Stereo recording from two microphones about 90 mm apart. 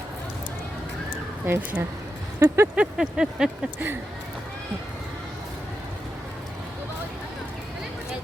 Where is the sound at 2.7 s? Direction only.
10° right (ahead or behind).